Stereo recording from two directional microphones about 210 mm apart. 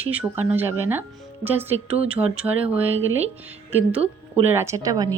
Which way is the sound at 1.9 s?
30° right (ahead or behind).